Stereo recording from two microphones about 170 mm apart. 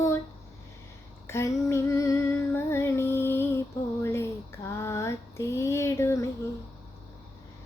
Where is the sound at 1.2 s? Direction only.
15° left (ahead or behind).